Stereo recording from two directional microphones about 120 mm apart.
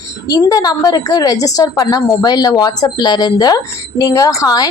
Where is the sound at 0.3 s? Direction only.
30° left (ahead or behind).